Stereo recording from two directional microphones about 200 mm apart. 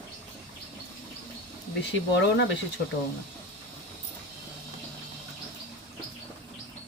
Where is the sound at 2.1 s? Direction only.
60° left (ahead or behind).